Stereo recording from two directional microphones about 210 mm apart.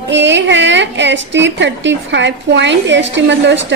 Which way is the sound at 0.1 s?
60° right (ahead or behind).